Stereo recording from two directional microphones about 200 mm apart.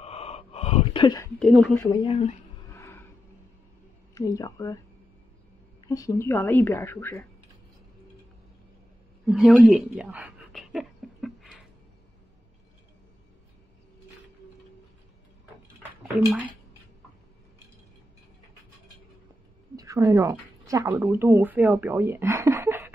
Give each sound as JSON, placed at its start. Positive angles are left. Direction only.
{"t": 0.0, "sound": "gasp", "side_deg": 30}
{"t": 1.4, "sound": "a woman's voice", "side_deg": 0}
{"t": 2.0, "sound": "speech", "side_deg": 25}
{"t": 2.7, "sound": "a sound", "side_deg": 10}
{"t": 4.1, "sound": "a woman's voice", "side_deg": 15}
{"t": 5.9, "sound": "a woman's voice", "side_deg": 15}
{"t": 9.2, "sound": "a sound", "side_deg": 0}
{"t": 15.8, "sound": "a sound", "side_deg": -5}
{"t": 19.7, "sound": "speech", "side_deg": -15}